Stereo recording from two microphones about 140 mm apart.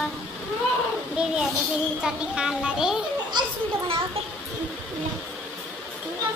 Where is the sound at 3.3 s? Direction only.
35° right (ahead or behind).